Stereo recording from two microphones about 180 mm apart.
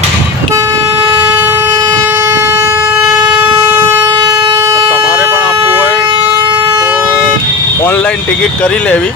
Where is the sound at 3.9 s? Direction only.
15° right (ahead or behind).